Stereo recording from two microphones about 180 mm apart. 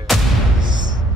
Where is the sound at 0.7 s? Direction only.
25° right (ahead or behind).